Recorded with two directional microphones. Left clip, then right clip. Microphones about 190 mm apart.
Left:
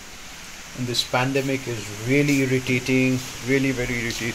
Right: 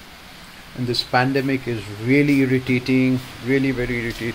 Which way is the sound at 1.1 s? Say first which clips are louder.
Right 5 dB; 20° right (ahead or behind).